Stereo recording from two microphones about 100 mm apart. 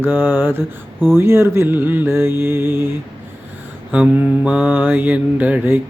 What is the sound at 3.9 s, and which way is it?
Mantra, 15° right (ahead or behind).